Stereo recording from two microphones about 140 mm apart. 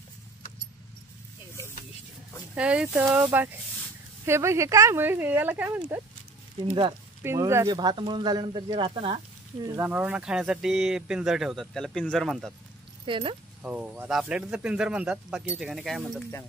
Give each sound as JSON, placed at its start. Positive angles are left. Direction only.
{"t": 2.5, "sound": "speech", "side_deg": -10}
{"t": 6.7, "sound": "speech", "side_deg": -35}
{"t": 7.2, "sound": "speech", "side_deg": -20}
{"t": 7.7, "sound": "speech", "side_deg": -35}
{"t": 9.8, "sound": "speech", "side_deg": -10}
{"t": 13.0, "sound": "speech", "side_deg": -40}
{"t": 13.6, "sound": "speech", "side_deg": -10}